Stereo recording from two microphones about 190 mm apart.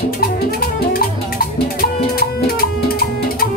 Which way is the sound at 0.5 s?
50° left (ahead or behind).